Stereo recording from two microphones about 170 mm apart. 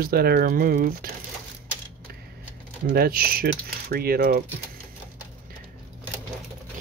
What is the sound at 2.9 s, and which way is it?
Speech, 60° right (ahead or behind).